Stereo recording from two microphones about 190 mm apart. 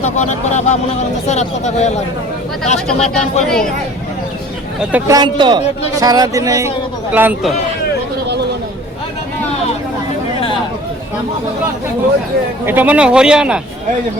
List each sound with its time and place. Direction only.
0.0 s speech: 40° left (ahead or behind)
3.0 s speech: 35° left (ahead or behind)
3.4 s speech: 5° left (ahead or behind)
4.9 s speech: 15° right (ahead or behind)
12.6 s speech: 10° right (ahead or behind)